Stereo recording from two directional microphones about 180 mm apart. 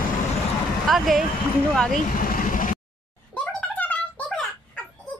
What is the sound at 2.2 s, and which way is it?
Vehicle, 50° left (ahead or behind).